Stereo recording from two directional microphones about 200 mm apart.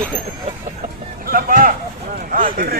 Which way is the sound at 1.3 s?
45° right (ahead or behind).